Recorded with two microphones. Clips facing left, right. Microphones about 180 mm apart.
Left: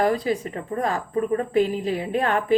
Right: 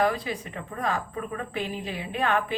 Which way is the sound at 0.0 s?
40° left (ahead or behind).